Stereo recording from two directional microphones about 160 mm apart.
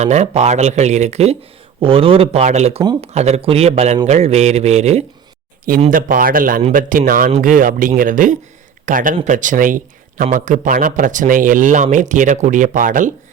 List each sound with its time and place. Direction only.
0.0 s speech: 45° right (ahead or behind)
5.9 s speech: 60° right (ahead or behind)